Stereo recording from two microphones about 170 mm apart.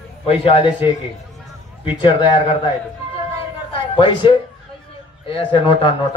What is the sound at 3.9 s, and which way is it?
Speech, 30° left (ahead or behind).